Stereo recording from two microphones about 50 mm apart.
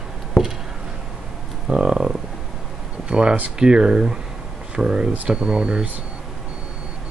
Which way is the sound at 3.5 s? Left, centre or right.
Centre.